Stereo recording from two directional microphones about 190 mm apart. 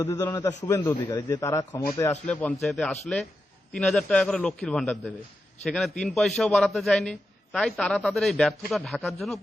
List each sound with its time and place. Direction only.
0.0 s a man's voice: 20° left (ahead or behind); by 9.4 s centre (ahead or behind)